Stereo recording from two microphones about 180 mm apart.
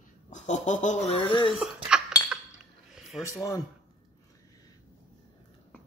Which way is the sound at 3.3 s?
20° left (ahead or behind).